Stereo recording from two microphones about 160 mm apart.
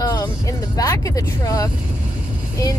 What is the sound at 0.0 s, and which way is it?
Vehicle, 25° left (ahead or behind).